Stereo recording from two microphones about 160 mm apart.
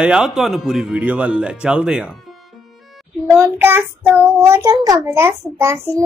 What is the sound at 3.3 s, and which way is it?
A child's voice, 15° right (ahead or behind).